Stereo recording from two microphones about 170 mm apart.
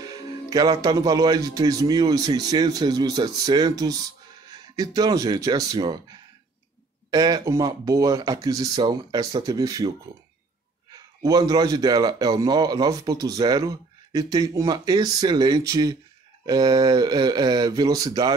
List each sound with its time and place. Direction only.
0.0 s a man's voice: 20° right (ahead or behind)
7.1 s a man's voice: 20° right (ahead or behind)